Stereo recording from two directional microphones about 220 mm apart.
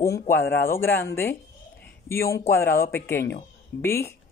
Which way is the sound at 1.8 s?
10° left (ahead or behind).